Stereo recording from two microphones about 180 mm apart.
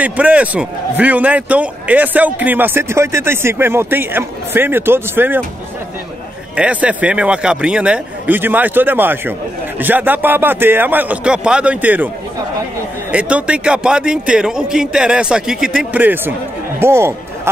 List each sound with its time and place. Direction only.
0.0 s a man's voice: 5° right (ahead or behind)
6.5 s a man's voice: 5° right (ahead or behind)
13.1 s a man's voice: 5° right (ahead or behind)